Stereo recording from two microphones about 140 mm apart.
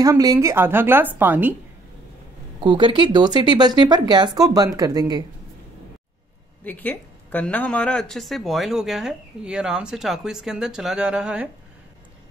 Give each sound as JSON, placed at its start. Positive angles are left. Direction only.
{"t": 0.0, "sound": "a woman's voice", "side_deg": -25}
{"t": 2.6, "sound": "speech", "side_deg": -35}
{"t": 6.6, "sound": "speech", "side_deg": 10}